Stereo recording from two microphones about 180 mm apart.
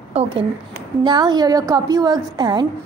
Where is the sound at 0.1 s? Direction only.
35° right (ahead or behind).